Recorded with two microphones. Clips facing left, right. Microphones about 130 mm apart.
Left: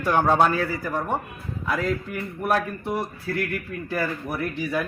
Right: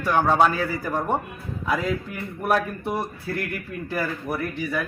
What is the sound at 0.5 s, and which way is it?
Speech, 10° right (ahead or behind).